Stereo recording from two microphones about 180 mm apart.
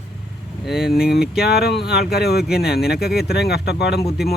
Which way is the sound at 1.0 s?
60° left (ahead or behind).